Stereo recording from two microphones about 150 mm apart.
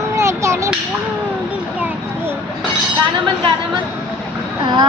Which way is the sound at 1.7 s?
10° right (ahead or behind).